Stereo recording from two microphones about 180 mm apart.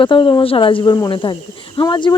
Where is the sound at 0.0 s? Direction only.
25° left (ahead or behind).